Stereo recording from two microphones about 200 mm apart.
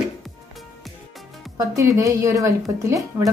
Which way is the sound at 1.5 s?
15° right (ahead or behind).